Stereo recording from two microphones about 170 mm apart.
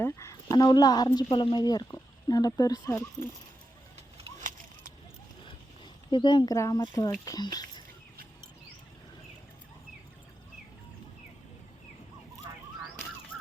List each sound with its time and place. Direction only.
0.0 s speech: 15° left (ahead or behind)
4.2 s a sound: 45° right (ahead or behind)
6.1 s speech: 25° left (ahead or behind)